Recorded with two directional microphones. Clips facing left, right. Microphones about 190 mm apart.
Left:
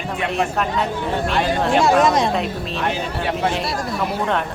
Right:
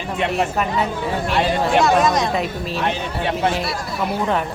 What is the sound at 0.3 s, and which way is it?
Speech, 5° right (ahead or behind).